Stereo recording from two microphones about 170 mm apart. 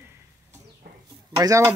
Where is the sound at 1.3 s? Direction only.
20° right (ahead or behind).